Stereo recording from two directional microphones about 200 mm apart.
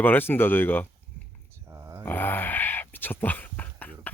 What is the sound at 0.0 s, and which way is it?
Speech, 10° left (ahead or behind).